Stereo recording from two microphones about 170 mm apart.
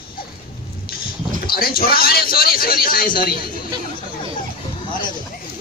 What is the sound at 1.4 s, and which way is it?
A man's voice, 65° left (ahead or behind).